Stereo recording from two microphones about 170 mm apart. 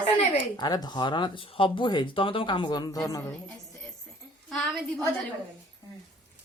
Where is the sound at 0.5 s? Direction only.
25° left (ahead or behind).